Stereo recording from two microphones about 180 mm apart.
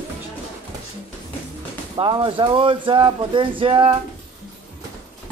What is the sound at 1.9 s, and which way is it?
Speech, 25° right (ahead or behind).